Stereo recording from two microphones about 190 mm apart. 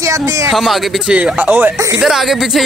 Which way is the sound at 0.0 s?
15° right (ahead or behind).